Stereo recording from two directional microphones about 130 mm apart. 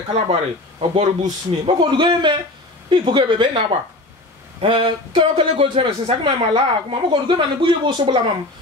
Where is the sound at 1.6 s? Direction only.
35° right (ahead or behind).